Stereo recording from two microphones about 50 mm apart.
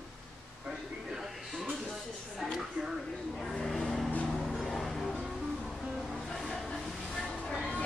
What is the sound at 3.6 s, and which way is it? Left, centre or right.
Vehicle, centre.